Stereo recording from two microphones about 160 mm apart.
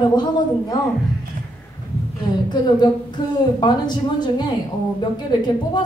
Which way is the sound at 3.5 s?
25° left (ahead or behind).